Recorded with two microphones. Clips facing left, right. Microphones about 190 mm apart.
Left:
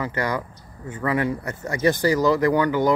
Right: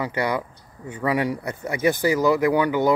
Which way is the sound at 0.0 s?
15° right (ahead or behind).